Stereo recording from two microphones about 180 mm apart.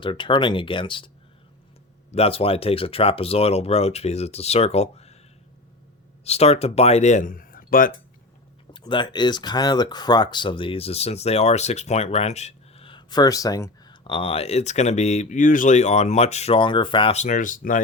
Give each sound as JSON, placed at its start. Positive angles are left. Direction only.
{"t": 0.0, "sound": "speech", "side_deg": 25}
{"t": 6.2, "sound": "speech", "side_deg": 35}
{"t": 8.7, "sound": "speech", "side_deg": 25}